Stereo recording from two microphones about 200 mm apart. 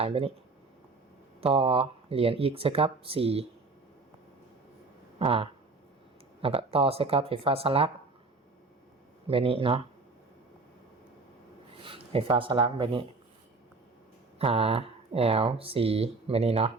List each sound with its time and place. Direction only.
0.0 s speech: 30° right (ahead or behind)
1.4 s speech: 30° right (ahead or behind)
5.2 s speech: 30° right (ahead or behind)
9.2 s speech: 30° right (ahead or behind)
11.8 s speech: 25° right (ahead or behind)
14.3 s speech: 30° right (ahead or behind)